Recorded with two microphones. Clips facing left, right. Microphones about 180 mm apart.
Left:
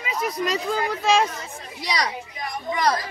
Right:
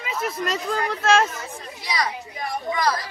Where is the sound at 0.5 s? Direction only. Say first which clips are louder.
Left 1 dB; 5° left (ahead or behind).